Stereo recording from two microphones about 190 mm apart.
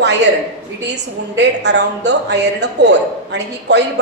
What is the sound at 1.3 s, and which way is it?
A man's voice, 65° right (ahead or behind).